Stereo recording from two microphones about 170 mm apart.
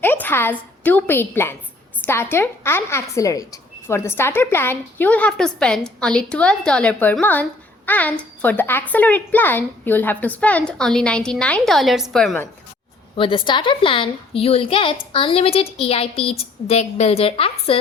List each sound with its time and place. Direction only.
0.0 s a woman's voice: 10° left (ahead or behind)
13.1 s a woman's voice: 30° left (ahead or behind)